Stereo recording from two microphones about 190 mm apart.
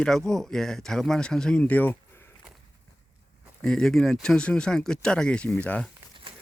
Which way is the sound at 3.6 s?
5° left (ahead or behind).